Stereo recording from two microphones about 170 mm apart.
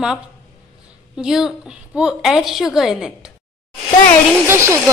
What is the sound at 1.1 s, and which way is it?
A woman's voice, 5° right (ahead or behind).